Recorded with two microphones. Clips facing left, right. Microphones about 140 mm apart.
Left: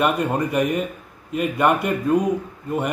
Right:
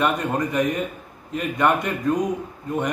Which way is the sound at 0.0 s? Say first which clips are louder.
Left 2 dB; 10° left (ahead or behind).